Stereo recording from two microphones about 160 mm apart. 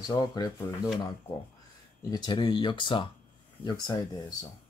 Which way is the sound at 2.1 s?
25° left (ahead or behind).